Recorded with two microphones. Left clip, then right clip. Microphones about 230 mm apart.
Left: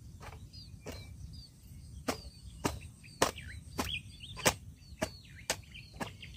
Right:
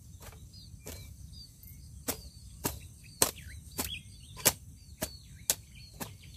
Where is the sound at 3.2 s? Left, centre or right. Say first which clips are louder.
Left 1 dB; centre.